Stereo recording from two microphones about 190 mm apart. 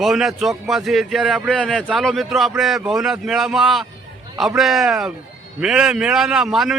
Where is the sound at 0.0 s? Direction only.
Centre (ahead or behind).